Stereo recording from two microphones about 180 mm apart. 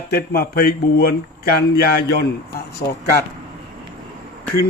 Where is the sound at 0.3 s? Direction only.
55° left (ahead or behind).